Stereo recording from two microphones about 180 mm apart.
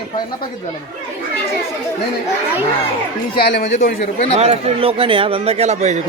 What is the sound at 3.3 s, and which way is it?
Speech, 60° left (ahead or behind).